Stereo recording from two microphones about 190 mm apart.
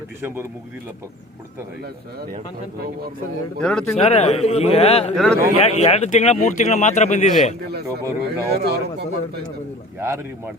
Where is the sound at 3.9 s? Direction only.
35° left (ahead or behind).